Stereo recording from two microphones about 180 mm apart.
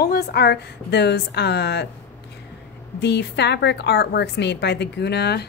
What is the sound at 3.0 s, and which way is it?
A woman's voice, 70° left (ahead or behind).